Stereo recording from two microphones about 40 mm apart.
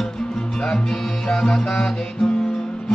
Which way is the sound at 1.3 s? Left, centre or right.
Centre.